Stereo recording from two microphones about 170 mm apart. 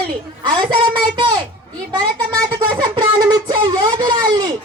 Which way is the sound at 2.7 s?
25° right (ahead or behind).